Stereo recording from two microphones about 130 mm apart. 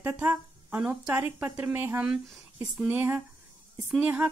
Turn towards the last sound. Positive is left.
turn(degrees=-10)  # may be behind; listen again after turning